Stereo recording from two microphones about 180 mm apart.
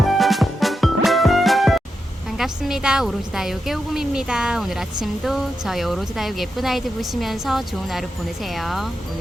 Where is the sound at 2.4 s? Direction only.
5° right (ahead or behind).